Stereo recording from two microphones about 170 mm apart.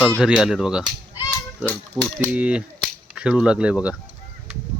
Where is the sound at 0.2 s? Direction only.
5° right (ahead or behind).